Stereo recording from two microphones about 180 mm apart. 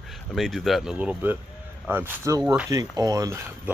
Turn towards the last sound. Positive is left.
turn(degrees=-20)  # may be behind; listen again after turning